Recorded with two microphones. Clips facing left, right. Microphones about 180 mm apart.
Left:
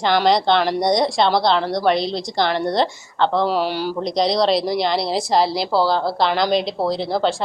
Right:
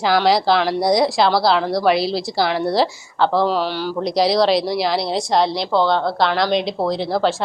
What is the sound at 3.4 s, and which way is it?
Speech, 10° left (ahead or behind).